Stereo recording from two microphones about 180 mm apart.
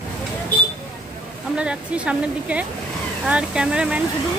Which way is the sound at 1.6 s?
5° right (ahead or behind).